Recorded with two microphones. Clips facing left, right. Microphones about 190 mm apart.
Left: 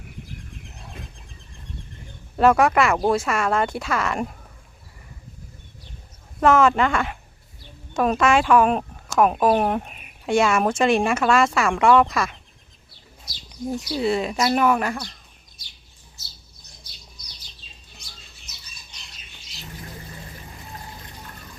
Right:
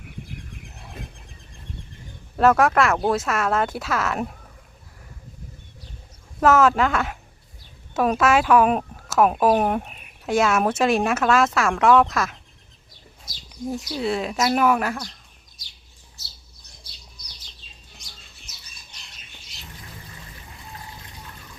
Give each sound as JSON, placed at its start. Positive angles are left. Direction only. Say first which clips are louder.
{"t": 2.3, "sound": "speech", "louder": "left 1 dB", "side_deg": 0}
{"t": 6.4, "sound": "speech", "louder": "even", "side_deg": -5}
{"t": 13.3, "sound": "speech", "louder": "left 2 dB", "side_deg": -50}
{"t": 13.9, "sound": "speech", "louder": "left 3 dB", "side_deg": 0}